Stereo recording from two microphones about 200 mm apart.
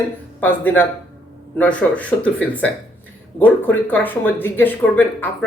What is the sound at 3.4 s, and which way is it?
Speech, 10° left (ahead or behind).